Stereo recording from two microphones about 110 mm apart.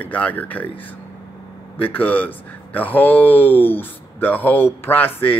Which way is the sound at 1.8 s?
15° left (ahead or behind).